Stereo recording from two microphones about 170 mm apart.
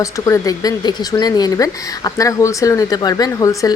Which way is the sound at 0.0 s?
20° left (ahead or behind).